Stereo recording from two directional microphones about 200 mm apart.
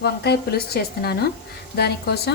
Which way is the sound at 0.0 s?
55° left (ahead or behind).